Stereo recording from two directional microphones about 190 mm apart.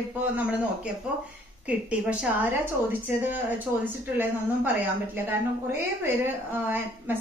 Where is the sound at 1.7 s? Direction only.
5° right (ahead or behind).